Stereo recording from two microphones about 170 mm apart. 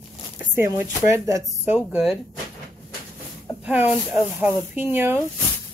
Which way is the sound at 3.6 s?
10° right (ahead or behind).